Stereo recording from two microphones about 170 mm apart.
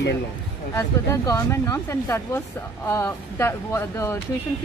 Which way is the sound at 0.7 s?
15° left (ahead or behind).